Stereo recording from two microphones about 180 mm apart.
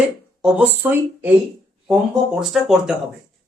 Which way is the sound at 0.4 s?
5° right (ahead or behind).